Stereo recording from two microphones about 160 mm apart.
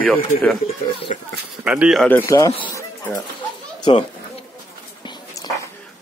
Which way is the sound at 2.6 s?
20° left (ahead or behind).